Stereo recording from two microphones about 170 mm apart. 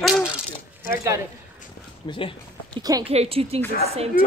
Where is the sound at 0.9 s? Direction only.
20° right (ahead or behind).